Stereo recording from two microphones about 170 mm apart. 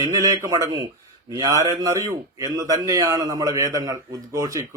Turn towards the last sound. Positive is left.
turn(degrees=-20)  # may be behind; listen again after turning